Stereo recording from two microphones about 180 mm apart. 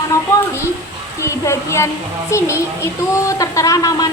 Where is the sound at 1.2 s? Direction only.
15° left (ahead or behind).